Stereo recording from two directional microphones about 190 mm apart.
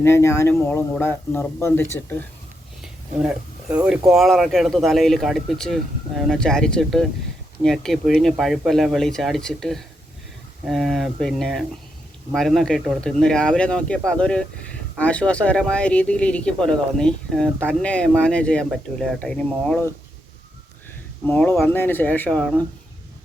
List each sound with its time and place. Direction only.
0.0 s speech: 15° left (ahead or behind)
2.8 s speech: 5° right (ahead or behind)
21.2 s speech: 10° left (ahead or behind)